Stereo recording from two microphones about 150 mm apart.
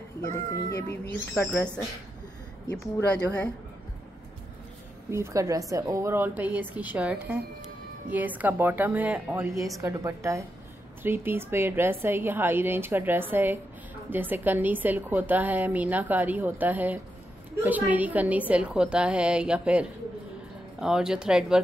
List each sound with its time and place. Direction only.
0.2 s a child's voice: 20° left (ahead or behind)
2.7 s a woman's voice: 5° left (ahead or behind)
5.1 s a woman's voice: 20° right (ahead or behind)